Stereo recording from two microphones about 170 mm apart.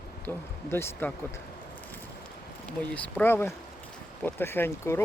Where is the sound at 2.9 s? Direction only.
10° left (ahead or behind).